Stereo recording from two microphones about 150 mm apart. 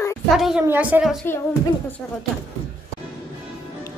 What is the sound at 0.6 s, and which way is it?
Speech, 10° right (ahead or behind).